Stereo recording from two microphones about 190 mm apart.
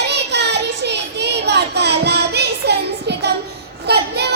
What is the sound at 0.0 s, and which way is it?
Child singing, 60° right (ahead or behind).